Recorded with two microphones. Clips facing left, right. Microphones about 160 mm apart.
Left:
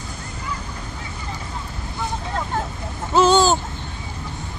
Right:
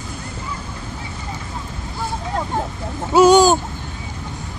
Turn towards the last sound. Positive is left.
turn(degrees=-10)  # may be behind; listen again after turning